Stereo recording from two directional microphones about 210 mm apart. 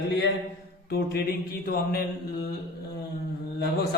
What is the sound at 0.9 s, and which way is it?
A man's voice, 45° left (ahead or behind).